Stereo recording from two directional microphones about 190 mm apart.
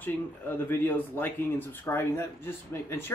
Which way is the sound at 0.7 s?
10° left (ahead or behind).